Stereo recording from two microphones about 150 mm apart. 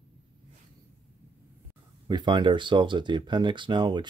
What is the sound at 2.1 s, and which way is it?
Speech, 30° right (ahead or behind).